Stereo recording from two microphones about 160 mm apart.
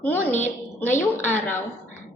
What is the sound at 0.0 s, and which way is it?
Speech, 15° left (ahead or behind).